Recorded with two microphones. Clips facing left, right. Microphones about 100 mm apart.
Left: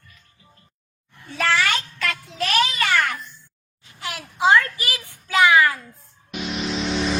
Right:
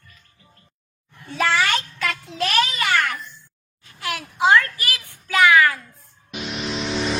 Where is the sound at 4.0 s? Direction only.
25° left (ahead or behind).